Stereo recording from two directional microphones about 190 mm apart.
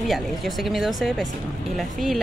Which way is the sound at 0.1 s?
Centre (ahead or behind).